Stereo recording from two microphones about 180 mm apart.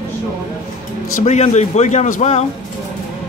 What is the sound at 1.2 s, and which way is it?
A man's voice, 40° left (ahead or behind).